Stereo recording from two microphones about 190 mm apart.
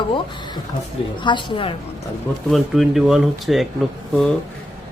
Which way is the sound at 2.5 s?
Centre (ahead or behind).